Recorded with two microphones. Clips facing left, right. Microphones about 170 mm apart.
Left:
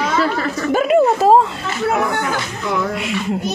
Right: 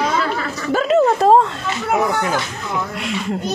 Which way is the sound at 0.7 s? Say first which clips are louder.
Left 1 dB; 15° left (ahead or behind).